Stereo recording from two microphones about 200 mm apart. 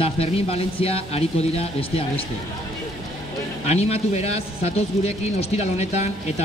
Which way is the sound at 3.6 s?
30° left (ahead or behind).